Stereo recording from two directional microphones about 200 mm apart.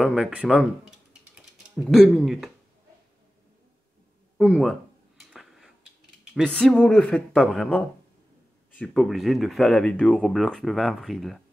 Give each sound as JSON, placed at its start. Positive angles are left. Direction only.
{"t": 0.0, "sound": "speech", "side_deg": 0}
{"t": 4.4, "sound": "speech", "side_deg": 0}
{"t": 5.3, "sound": "a sound", "side_deg": 0}
{"t": 6.3, "sound": "speech", "side_deg": 5}